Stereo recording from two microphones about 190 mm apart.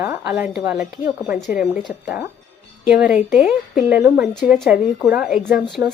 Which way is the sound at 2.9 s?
5° right (ahead or behind).